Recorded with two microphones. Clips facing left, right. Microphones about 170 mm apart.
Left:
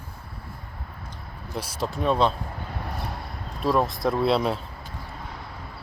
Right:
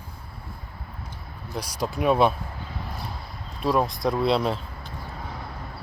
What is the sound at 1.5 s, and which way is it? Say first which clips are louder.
Speech: even; centre (ahead or behind).